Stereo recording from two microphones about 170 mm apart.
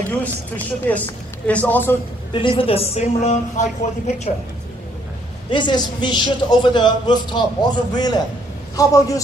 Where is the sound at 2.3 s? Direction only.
30° left (ahead or behind).